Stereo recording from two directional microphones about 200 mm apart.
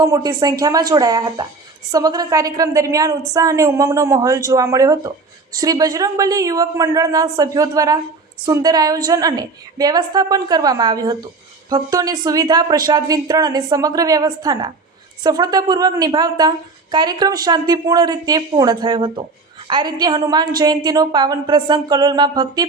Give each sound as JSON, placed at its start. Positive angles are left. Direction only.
{"t": 0.0, "sound": "a woman's voice", "side_deg": -20}